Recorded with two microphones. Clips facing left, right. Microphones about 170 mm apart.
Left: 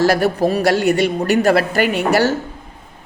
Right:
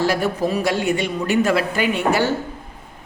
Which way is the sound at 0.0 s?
75° left (ahead or behind).